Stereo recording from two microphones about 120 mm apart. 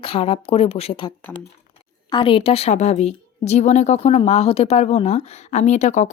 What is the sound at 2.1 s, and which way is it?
A woman's voice, 45° left (ahead or behind).